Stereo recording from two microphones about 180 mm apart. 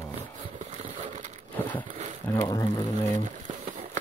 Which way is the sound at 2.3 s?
20° left (ahead or behind).